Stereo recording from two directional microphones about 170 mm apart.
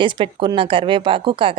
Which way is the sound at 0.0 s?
30° right (ahead or behind).